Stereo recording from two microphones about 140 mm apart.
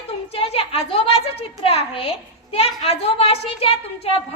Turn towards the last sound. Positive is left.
turn(degrees=45)  # may be behind; listen again after turning